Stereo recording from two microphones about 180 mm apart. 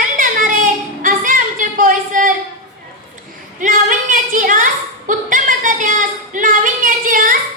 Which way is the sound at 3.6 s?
45° right (ahead or behind).